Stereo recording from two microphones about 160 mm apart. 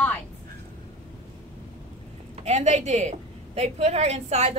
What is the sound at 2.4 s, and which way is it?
A woman's voice, 45° right (ahead or behind).